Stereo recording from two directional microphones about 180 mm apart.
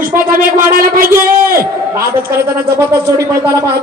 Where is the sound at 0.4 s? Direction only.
50° right (ahead or behind).